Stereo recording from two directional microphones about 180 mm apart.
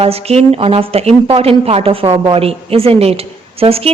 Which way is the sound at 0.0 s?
35° right (ahead or behind).